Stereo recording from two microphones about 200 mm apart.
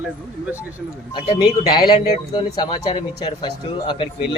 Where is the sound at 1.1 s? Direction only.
20° left (ahead or behind).